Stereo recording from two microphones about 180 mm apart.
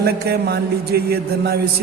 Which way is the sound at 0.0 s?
60° right (ahead or behind).